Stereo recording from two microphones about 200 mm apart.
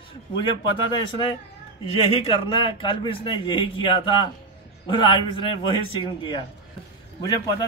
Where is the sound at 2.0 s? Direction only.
30° left (ahead or behind).